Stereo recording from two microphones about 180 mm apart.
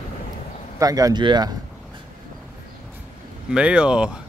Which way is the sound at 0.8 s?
20° right (ahead or behind).